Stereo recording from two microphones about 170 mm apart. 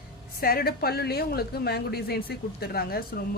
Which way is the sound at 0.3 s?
60° left (ahead or behind).